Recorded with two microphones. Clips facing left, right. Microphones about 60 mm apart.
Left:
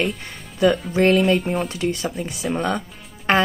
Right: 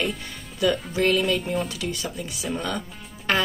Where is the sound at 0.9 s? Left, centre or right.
Left.